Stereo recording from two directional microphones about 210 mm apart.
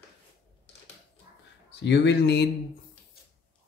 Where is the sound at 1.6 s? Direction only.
55° left (ahead or behind).